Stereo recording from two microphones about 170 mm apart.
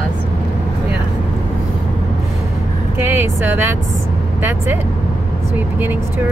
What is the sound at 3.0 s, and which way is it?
Speech, 15° right (ahead or behind).